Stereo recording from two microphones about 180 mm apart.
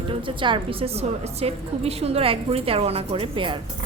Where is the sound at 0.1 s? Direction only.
30° right (ahead or behind).